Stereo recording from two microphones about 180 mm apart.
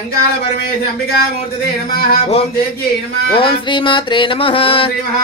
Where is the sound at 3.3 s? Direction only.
30° left (ahead or behind).